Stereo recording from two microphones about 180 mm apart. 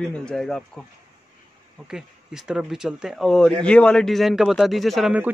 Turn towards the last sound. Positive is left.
turn(degrees=-5)  # may be behind; listen again after turning